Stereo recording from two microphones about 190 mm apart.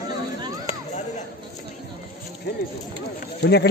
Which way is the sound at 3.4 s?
60° left (ahead or behind).